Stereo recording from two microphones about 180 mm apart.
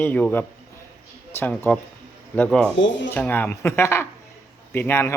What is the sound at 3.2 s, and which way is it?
Speech, 10° left (ahead or behind).